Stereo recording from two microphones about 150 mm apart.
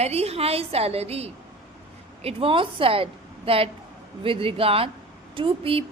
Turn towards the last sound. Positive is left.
turn(degrees=-35)  # may be behind; listen again after turning